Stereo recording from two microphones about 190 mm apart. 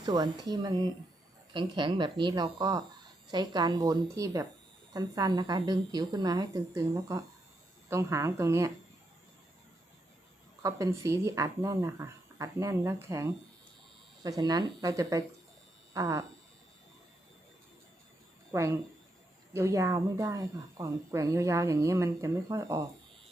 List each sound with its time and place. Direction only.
0.0 s a woman's voice: 20° right (ahead or behind)
10.6 s a woman's voice: 15° right (ahead or behind)
15.9 s a sound: 15° right (ahead or behind)
18.5 s a woman's voice: 15° right (ahead or behind)